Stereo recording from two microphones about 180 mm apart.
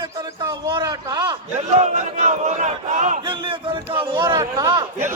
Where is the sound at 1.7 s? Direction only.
40° right (ahead or behind).